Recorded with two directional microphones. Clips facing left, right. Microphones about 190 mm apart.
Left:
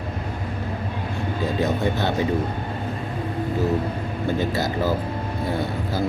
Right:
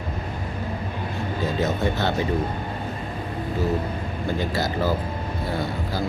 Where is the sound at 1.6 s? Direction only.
15° left (ahead or behind).